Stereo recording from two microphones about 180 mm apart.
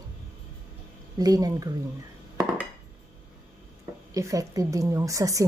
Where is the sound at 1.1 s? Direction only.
20° right (ahead or behind).